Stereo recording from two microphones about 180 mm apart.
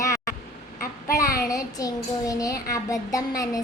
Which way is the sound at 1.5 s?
20° left (ahead or behind).